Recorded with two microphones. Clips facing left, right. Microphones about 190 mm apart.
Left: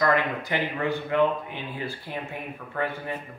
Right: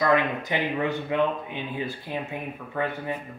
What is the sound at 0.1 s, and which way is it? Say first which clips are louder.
Speech: right 2 dB; 20° right (ahead or behind).